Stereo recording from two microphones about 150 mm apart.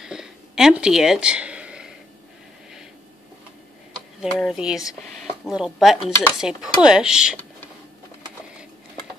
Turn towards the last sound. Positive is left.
turn(degrees=-5)  # may be behind; listen again after turning